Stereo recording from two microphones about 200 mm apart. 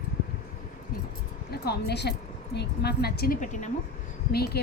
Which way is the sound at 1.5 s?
55° left (ahead or behind).